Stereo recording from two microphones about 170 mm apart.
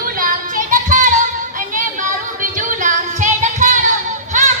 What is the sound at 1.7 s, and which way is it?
Music, 50° right (ahead or behind).